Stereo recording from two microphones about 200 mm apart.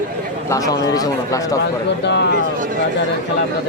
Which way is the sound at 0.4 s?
15° left (ahead or behind).